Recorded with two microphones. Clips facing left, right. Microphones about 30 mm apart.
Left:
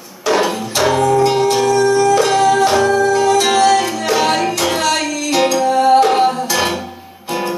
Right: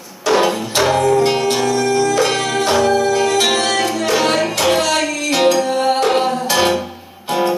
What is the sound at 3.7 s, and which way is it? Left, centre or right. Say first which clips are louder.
Music: left 2 dB; centre.